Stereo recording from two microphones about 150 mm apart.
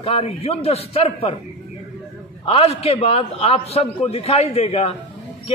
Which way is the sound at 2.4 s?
40° left (ahead or behind).